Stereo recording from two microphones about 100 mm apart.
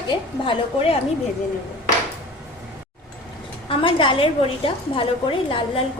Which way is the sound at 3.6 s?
60° left (ahead or behind).